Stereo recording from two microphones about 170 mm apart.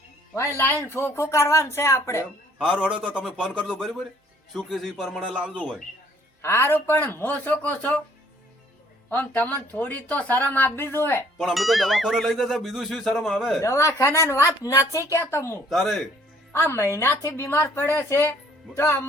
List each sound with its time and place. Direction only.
0.3 s speech: 15° left (ahead or behind)
2.6 s speech: 5° right (ahead or behind)
6.4 s speech: 15° left (ahead or behind)
9.0 s speech: 10° left (ahead or behind)
11.3 s speech: centre (ahead or behind)
13.6 s speech: 15° left (ahead or behind)
15.7 s speech: centre (ahead or behind)
16.5 s speech: 15° left (ahead or behind)